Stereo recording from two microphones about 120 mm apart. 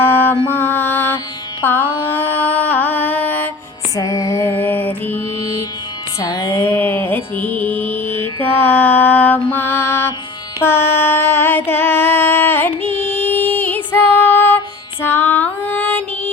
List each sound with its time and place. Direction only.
0.0 s mantra: 15° left (ahead or behind)
0.4 s music: 20° left (ahead or behind)
1.6 s mantra: 15° left (ahead or behind)
3.9 s music: 30° left (ahead or behind)
6.1 s music: 30° left (ahead or behind)
10.6 s a sound: 20° left (ahead or behind)
13.1 s music: 15° left (ahead or behind)